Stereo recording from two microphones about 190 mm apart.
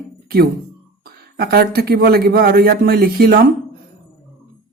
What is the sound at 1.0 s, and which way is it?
Speech, 55° right (ahead or behind).